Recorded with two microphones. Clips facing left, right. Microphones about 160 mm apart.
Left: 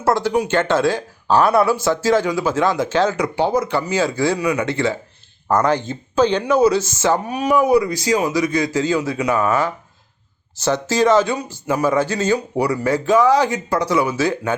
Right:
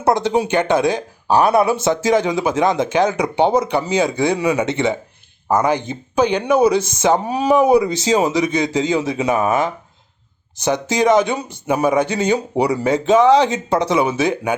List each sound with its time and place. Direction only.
0.0 s speech: 20° right (ahead or behind)
7.2 s speech: 30° right (ahead or behind)